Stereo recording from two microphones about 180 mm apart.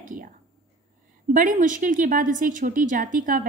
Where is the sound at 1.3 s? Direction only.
45° right (ahead or behind).